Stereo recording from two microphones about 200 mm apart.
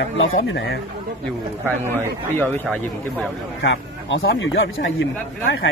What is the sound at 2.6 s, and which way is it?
Speech, centre (ahead or behind).